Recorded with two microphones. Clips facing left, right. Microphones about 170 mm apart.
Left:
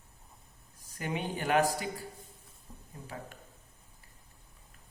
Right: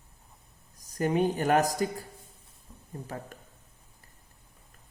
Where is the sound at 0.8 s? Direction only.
40° right (ahead or behind).